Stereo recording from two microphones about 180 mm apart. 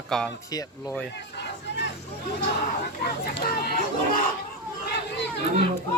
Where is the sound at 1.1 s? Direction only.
70° left (ahead or behind).